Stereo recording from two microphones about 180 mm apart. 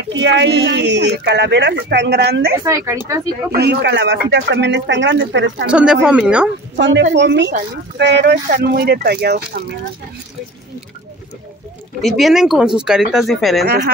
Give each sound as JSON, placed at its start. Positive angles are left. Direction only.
{"t": 0.2, "sound": "speech", "side_deg": -75}
{"t": 2.6, "sound": "speech", "side_deg": -15}
{"t": 3.5, "sound": "speech", "side_deg": -70}
{"t": 5.7, "sound": "speech", "side_deg": -5}
{"t": 6.8, "sound": "speech", "side_deg": -80}
{"t": 12.0, "sound": "speech", "side_deg": 0}